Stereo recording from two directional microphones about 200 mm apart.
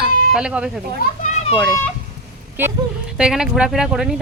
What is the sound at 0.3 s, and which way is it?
Speech, 5° right (ahead or behind).